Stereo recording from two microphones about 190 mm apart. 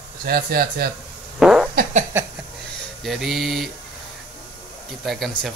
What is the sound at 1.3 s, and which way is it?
Fart, 5° right (ahead or behind).